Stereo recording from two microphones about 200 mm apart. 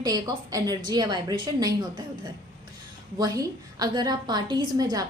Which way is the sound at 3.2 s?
20° right (ahead or behind).